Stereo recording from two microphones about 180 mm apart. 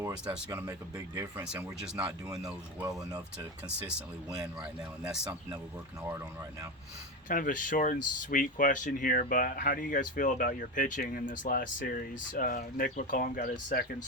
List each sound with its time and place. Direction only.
0.1 s speech: 5° right (ahead or behind)
2.5 s speech: 20° right (ahead or behind)
4.4 s speech: 5° right (ahead or behind)
7.3 s speech: 50° left (ahead or behind)